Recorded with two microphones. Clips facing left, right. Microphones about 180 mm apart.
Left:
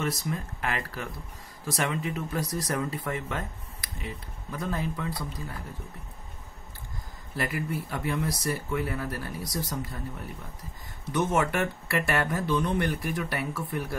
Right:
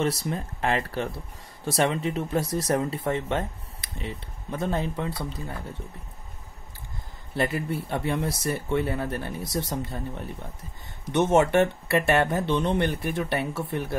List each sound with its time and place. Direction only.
0.0 s speech: 30° right (ahead or behind)
7.3 s speech: 30° right (ahead or behind)